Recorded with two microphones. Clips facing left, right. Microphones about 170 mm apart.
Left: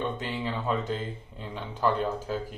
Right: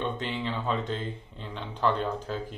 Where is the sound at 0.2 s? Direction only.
5° left (ahead or behind).